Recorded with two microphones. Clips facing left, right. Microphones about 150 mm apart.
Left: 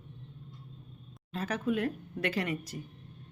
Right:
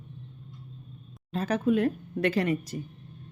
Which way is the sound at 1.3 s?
30° right (ahead or behind).